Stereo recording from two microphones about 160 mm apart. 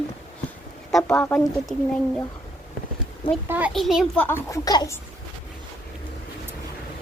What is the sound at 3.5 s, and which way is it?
Child singing, 10° right (ahead or behind).